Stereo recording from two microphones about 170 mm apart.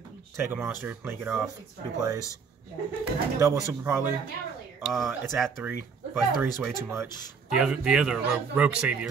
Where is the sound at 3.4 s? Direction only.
15° right (ahead or behind).